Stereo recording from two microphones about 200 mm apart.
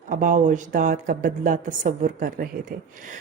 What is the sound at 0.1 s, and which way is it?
A woman's voice, 40° right (ahead or behind).